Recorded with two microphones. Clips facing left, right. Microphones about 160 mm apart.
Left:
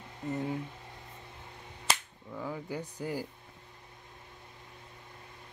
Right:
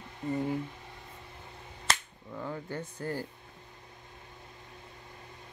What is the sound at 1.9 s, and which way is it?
Cap gun, 10° left (ahead or behind).